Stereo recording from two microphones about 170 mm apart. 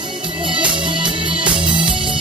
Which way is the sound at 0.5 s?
30° right (ahead or behind).